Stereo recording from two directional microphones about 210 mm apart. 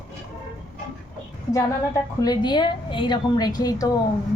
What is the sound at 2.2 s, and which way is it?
A woman's voice, 20° left (ahead or behind).